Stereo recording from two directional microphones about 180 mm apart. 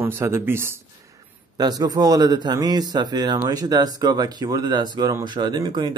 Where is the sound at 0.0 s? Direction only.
15° right (ahead or behind).